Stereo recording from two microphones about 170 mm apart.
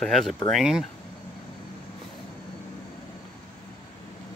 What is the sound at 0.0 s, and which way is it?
Speech, centre (ahead or behind).